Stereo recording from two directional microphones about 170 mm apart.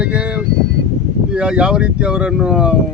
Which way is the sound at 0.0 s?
5° right (ahead or behind).